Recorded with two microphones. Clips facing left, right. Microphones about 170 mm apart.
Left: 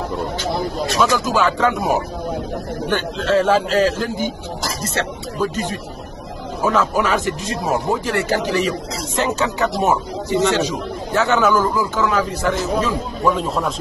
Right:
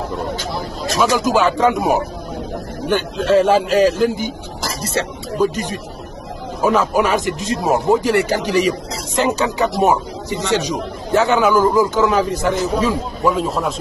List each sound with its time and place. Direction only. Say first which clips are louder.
1.0 s speech: right 3 dB; 15° right (ahead or behind)
2.9 s speech: right 4 dB; 15° right (ahead or behind)